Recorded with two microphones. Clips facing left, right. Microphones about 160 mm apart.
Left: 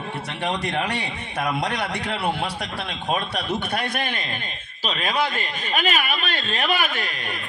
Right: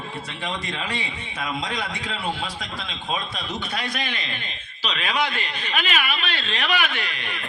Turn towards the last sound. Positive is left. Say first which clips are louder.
# left 1 dB
turn(degrees=40)  # may be behind; listen again after turning